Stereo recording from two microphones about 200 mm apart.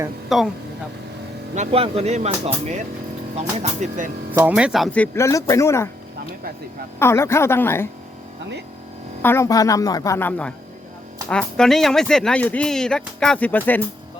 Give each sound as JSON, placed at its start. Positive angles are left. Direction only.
{"t": 0.3, "sound": "speech", "side_deg": 0}
{"t": 1.5, "sound": "speech", "side_deg": -30}
{"t": 4.3, "sound": "speech", "side_deg": -10}
{"t": 7.0, "sound": "speech", "side_deg": 15}
{"t": 9.2, "sound": "speech", "side_deg": 15}